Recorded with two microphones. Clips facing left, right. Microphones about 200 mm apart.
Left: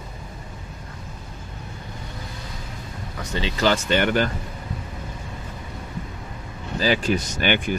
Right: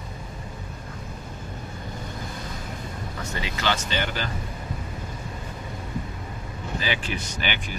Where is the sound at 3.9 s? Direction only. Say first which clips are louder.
Left 9 dB; 60° left (ahead or behind).